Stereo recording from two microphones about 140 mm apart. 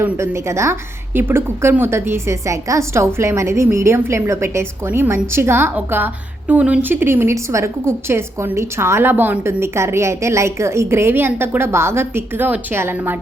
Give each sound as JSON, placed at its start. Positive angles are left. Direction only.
{"t": 0.0, "sound": "a woman's voice", "side_deg": -20}